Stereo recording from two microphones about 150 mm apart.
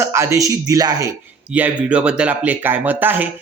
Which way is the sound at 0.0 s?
20° right (ahead or behind).